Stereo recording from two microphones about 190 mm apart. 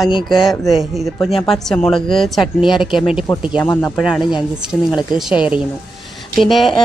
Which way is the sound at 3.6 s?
10° left (ahead or behind).